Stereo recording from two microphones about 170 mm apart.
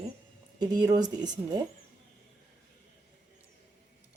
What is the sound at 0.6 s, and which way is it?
Speech, 25° right (ahead or behind).